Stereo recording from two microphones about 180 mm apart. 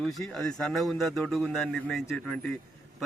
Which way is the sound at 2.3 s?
5° left (ahead or behind).